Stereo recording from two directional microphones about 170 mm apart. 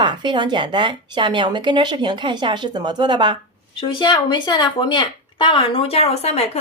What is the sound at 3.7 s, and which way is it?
Speech, 30° left (ahead or behind).